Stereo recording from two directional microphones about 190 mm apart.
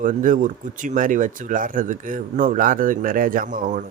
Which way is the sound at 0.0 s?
45° right (ahead or behind).